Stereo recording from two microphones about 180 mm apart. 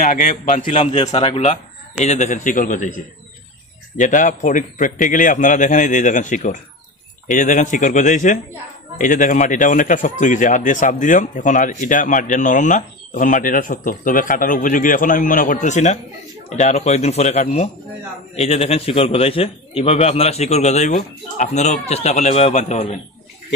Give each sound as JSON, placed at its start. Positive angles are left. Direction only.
{"t": 0.0, "sound": "a man's voice", "side_deg": 50}